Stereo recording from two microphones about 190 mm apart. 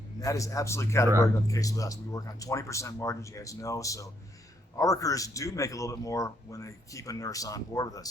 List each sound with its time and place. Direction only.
0.2 s a man's voice: 15° left (ahead or behind)